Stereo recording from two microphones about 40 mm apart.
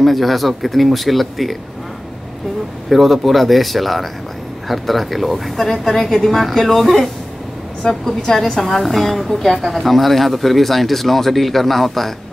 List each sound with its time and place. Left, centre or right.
0.0 s a woman's voice: centre
2.9 s a woman's voice: centre